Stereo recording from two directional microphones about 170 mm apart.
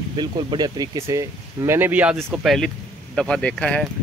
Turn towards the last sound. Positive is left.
turn(degrees=5)  # may be behind; listen again after turning